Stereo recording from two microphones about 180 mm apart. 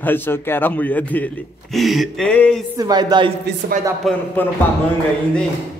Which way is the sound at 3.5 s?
70° right (ahead or behind).